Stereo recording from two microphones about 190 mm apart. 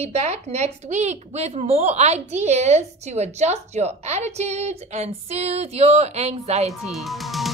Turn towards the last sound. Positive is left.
turn(degrees=0)  # may be behind; listen again after turning